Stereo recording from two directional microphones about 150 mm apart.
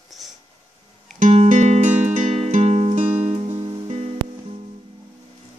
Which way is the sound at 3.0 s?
10° right (ahead or behind).